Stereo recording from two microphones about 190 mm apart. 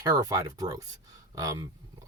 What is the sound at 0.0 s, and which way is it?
Speech, 20° right (ahead or behind).